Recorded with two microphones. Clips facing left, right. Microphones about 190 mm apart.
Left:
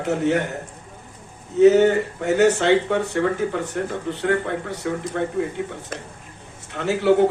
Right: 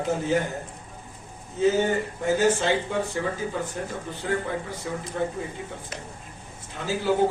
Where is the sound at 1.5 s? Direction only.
70° left (ahead or behind).